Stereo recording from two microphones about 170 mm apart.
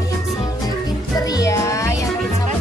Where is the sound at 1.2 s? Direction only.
20° left (ahead or behind).